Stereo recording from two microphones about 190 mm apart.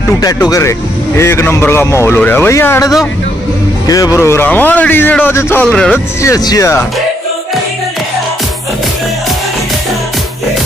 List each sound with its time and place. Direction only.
0.2 s speech: 20° left (ahead or behind); by 5.9 s 5° left (ahead or behind)
6.2 s speech: 20° left (ahead or behind)